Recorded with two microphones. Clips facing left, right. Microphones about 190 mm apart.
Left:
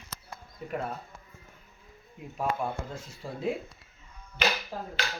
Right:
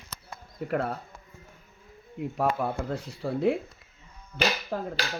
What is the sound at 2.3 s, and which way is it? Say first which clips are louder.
Speech: right 3 dB; 65° right (ahead or behind).